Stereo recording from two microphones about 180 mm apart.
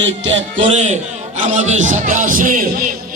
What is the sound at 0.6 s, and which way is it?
A man's voice, 40° right (ahead or behind).